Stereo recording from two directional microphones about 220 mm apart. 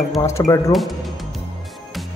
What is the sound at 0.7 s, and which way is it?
Music, centre (ahead or behind).